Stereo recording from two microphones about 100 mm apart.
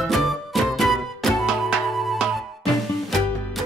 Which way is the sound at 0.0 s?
Centre (ahead or behind).